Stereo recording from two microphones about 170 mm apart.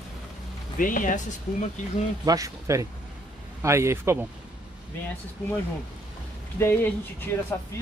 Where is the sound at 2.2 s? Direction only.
20° right (ahead or behind).